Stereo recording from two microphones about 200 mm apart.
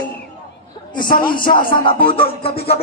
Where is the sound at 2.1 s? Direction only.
30° left (ahead or behind).